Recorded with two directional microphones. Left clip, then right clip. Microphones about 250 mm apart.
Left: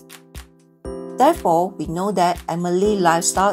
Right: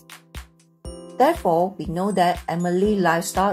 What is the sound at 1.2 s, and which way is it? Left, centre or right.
Speech, left.